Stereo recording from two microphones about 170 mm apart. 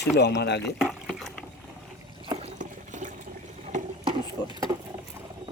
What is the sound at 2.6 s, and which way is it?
Water, 45° right (ahead or behind).